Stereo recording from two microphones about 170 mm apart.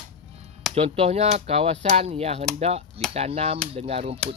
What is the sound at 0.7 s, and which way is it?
Speech, 35° right (ahead or behind).